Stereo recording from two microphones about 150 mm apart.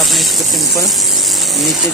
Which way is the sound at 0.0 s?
Centre (ahead or behind).